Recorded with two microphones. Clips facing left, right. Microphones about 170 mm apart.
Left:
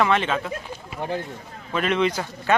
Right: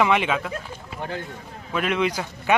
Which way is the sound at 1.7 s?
5° right (ahead or behind).